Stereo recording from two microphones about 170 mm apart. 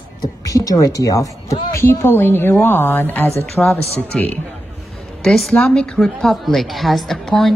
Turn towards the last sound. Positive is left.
turn(degrees=0)  # may be behind; listen again after turning